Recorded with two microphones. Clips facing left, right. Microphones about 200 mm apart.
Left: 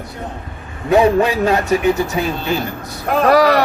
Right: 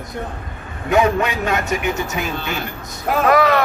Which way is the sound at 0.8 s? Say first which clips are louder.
Left 4 dB; 30° left (ahead or behind).